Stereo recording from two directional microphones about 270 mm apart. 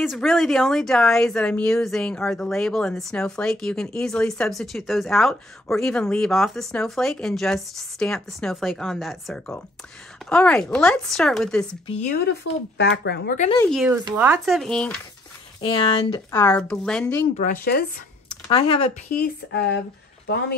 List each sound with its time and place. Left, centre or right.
0.0 s speech: centre
11.9 s speech: left
12.3 s speech: left
13.7 s speech: centre
15.6 s speech: centre
17.4 s speech: left
18.5 s speech: left
19.1 s speech: left